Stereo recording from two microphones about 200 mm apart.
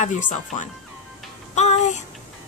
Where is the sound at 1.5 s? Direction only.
35° left (ahead or behind).